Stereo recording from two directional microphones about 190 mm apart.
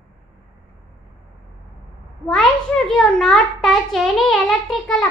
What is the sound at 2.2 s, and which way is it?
A child's voice, 5° left (ahead or behind).